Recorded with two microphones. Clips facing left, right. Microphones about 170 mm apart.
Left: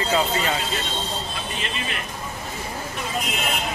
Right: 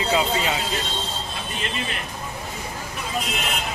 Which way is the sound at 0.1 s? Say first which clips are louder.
Even; 15° right (ahead or behind).